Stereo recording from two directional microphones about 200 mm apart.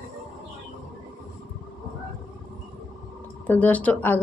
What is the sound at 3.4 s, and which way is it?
Speech, 10° left (ahead or behind).